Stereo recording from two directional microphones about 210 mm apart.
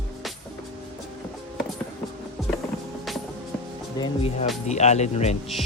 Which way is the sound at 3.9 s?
25° left (ahead or behind).